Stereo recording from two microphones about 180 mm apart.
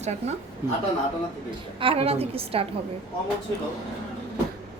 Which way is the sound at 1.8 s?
30° right (ahead or behind).